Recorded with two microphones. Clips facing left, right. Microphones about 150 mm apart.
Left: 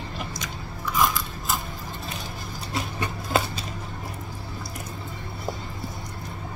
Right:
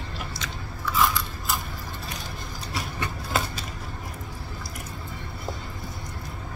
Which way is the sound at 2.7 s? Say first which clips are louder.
Left 2 dB; 20° left (ahead or behind).